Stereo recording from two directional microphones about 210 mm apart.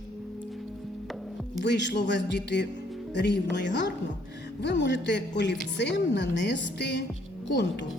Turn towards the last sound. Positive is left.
turn(degrees=55)  # may be behind; listen again after turning